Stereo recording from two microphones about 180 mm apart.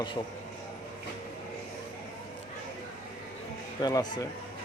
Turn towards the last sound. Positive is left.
turn(degrees=20)  # may be behind; listen again after turning